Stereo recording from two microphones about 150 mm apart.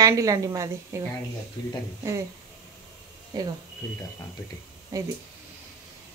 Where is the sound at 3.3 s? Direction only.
25° right (ahead or behind).